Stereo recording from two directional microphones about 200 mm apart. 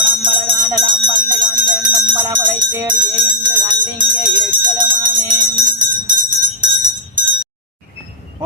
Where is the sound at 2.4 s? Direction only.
15° right (ahead or behind).